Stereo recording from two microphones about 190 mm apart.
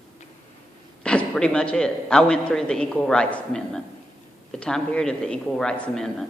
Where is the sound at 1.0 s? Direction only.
5° left (ahead or behind).